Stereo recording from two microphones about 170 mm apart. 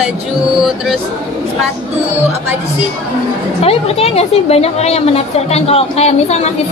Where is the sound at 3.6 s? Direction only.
35° left (ahead or behind).